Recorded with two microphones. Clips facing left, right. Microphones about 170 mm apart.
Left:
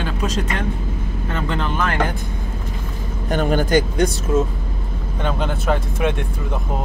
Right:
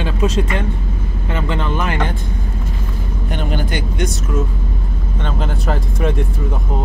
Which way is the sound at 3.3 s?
45° left (ahead or behind).